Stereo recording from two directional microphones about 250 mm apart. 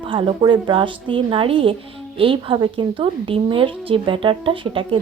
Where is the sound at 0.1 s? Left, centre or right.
Right.